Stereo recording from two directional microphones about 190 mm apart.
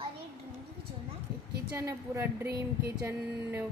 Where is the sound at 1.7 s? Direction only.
15° right (ahead or behind).